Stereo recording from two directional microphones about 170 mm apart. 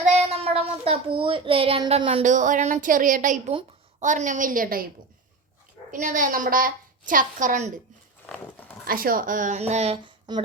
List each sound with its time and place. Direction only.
0.0 s child singing: 40° right (ahead or behind)
2.2 s a woman's voice: 50° right (ahead or behind)
5.9 s a woman's voice: 50° right (ahead or behind)
8.8 s a woman's voice: 60° right (ahead or behind); by 10.0 s 40° right (ahead or behind)
10.3 s speech: 25° right (ahead or behind)